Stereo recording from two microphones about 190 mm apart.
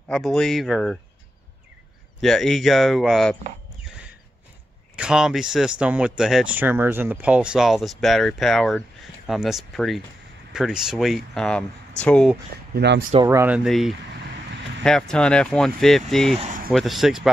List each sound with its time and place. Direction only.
0.1 s speech: centre (ahead or behind)
2.1 s speech: centre (ahead or behind)
4.9 s speech: 5° right (ahead or behind)
12.7 s speech: 65° right (ahead or behind)
13.2 s speech: 15° right (ahead or behind)
13.7 s speech: centre (ahead or behind)
16.3 s speech: 40° right (ahead or behind)
16.7 s speech: centre (ahead or behind)